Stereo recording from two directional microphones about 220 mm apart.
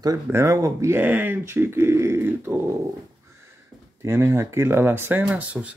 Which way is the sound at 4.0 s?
10° right (ahead or behind).